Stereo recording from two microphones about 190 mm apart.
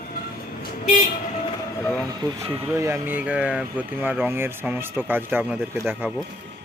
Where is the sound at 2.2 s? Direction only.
20° right (ahead or behind).